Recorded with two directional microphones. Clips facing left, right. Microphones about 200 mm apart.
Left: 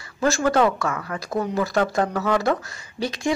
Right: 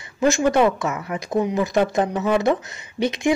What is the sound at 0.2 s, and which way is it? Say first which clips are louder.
Speech: right 2 dB; 20° right (ahead or behind).